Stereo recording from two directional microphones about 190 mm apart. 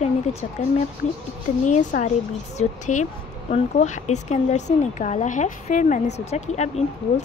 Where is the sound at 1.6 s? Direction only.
40° left (ahead or behind).